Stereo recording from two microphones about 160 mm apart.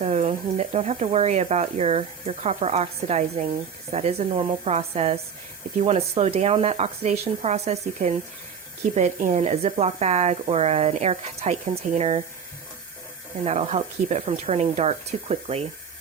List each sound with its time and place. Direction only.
0.0 s speech: 45° right (ahead or behind)
13.4 s speech: 40° right (ahead or behind)